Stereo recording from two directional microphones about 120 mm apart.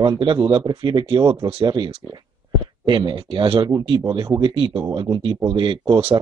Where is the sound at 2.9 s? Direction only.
40° right (ahead or behind).